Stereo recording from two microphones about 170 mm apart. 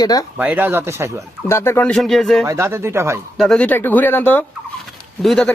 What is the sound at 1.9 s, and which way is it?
Speech, centre (ahead or behind).